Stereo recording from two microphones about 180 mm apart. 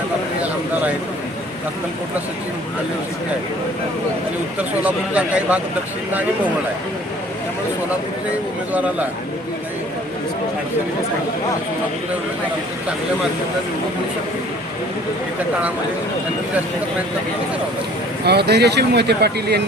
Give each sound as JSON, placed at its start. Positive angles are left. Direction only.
{"t": 4.8, "sound": "a man's voice", "side_deg": -10}
{"t": 18.3, "sound": "speech", "side_deg": -65}